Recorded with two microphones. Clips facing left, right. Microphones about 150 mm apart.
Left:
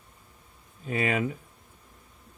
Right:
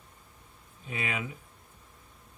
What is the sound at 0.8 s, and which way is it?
Speech, 45° left (ahead or behind).